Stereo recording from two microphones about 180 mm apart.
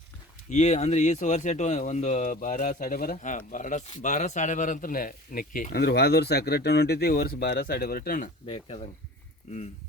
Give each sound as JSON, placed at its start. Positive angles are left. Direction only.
{"t": 0.5, "sound": "speech", "side_deg": 40}
{"t": 8.4, "sound": "speech", "side_deg": 35}